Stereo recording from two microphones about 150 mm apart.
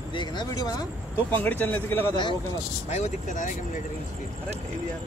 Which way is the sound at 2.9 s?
50° left (ahead or behind).